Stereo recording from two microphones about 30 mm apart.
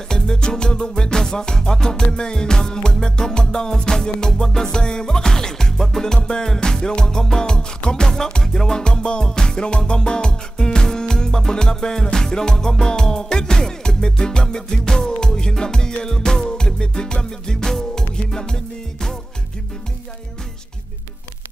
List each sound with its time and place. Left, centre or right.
0.1 s music: left
6.1 s music: left
8.8 s music: left